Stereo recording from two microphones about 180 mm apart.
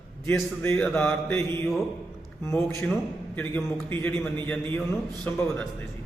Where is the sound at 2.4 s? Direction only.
15° left (ahead or behind).